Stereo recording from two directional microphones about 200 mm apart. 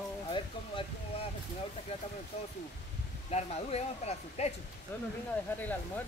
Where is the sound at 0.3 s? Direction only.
25° left (ahead or behind).